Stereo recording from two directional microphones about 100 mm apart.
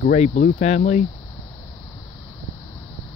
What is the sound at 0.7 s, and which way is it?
Speech, 90° left.